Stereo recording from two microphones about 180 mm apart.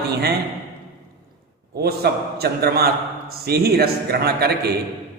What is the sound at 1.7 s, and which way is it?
A man's voice, 60° right (ahead or behind).